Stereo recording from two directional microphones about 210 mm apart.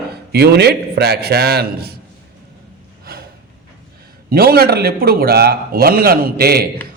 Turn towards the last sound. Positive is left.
turn(degrees=-45)  # may be behind; listen again after turning